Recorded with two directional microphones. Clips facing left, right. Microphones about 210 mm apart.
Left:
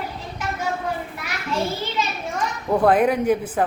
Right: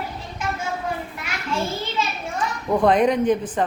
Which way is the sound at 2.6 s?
5° left (ahead or behind).